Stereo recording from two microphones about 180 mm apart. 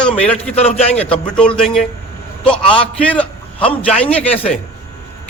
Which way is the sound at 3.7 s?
30° left (ahead or behind).